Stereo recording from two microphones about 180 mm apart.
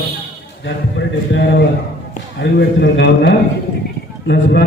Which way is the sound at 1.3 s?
90° left.